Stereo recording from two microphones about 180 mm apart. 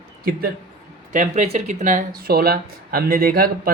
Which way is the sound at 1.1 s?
40° right (ahead or behind).